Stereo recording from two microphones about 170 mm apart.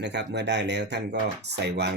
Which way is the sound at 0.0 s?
90° right.